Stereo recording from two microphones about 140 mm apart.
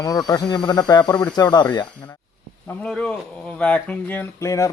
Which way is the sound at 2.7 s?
10° left (ahead or behind).